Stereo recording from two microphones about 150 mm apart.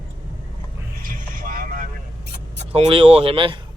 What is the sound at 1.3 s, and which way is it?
Vehicle, 65° right (ahead or behind).